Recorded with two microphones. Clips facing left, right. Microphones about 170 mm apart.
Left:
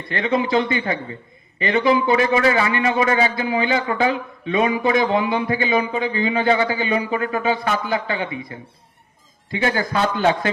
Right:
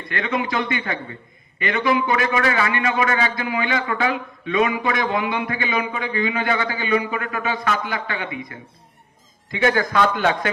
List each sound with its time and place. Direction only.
0.1 s a man's voice: 30° left (ahead or behind)